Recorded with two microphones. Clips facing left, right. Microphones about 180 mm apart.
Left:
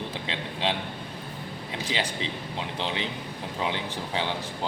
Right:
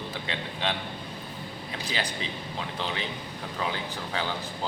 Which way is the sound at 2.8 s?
25° left (ahead or behind).